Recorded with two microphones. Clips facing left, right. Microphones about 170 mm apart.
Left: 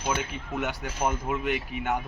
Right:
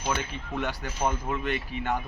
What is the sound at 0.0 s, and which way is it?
Speech, 10° left (ahead or behind).